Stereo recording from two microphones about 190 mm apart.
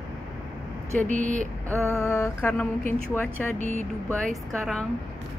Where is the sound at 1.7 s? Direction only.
15° right (ahead or behind).